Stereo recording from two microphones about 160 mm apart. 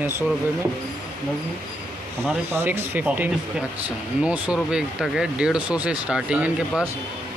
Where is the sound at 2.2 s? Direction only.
15° right (ahead or behind).